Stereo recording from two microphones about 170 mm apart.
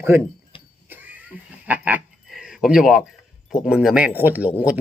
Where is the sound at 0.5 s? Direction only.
30° left (ahead or behind).